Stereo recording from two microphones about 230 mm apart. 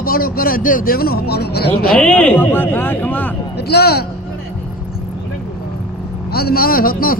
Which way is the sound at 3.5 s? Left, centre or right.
Left.